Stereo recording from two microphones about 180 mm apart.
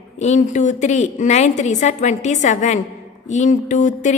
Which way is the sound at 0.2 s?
40° left (ahead or behind).